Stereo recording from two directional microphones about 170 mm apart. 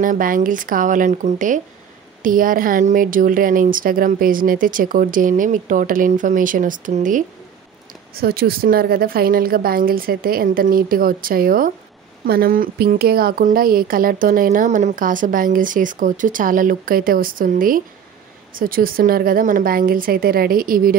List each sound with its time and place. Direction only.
0.0 s speech: 55° right (ahead or behind)
8.1 s speech: 65° right (ahead or behind)